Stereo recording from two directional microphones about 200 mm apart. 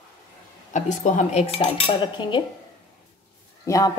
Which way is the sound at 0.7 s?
35° left (ahead or behind).